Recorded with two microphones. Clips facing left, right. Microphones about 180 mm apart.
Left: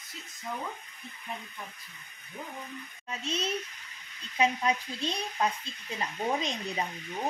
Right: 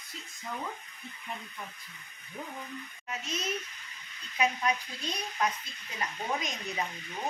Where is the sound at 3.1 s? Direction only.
30° left (ahead or behind).